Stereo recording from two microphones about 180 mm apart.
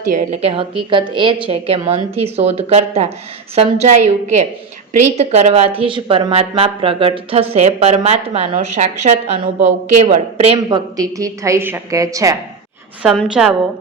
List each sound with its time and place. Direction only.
0.4 s speech: 30° right (ahead or behind)
10.7 s a woman's voice: 20° right (ahead or behind)
13.0 s a woman's voice: 5° right (ahead or behind)